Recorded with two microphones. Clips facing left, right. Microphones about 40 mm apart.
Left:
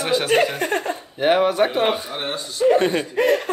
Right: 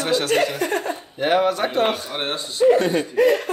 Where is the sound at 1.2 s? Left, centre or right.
Centre.